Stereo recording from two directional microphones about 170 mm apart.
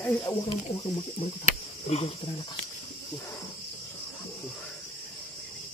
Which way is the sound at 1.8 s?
40° left (ahead or behind).